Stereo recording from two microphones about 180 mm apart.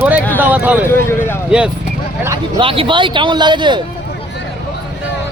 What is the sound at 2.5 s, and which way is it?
A man's voice, 30° right (ahead or behind).